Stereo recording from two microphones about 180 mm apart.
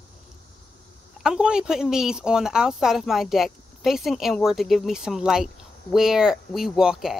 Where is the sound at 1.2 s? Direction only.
5° right (ahead or behind).